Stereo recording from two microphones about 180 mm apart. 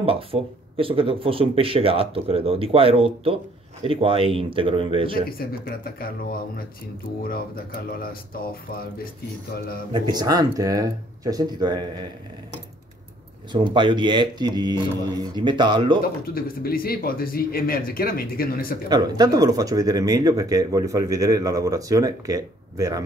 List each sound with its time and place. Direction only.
0.0 s speech: 30° right (ahead or behind)
5.4 s speech: 55° left (ahead or behind)
7.2 s speech: 55° left (ahead or behind)
9.9 s speech: 20° right (ahead or behind)
13.5 s speech: 25° right (ahead or behind)
16.0 s speech: 55° left (ahead or behind)
18.9 s speech: 25° right (ahead or behind)